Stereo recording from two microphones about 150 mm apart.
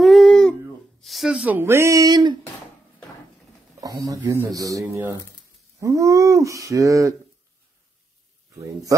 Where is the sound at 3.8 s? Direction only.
25° right (ahead or behind).